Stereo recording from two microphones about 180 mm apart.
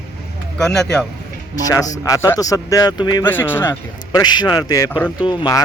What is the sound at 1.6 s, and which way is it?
A man's voice, 20° left (ahead or behind).